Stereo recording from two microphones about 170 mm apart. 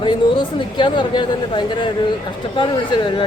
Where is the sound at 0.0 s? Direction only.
30° left (ahead or behind).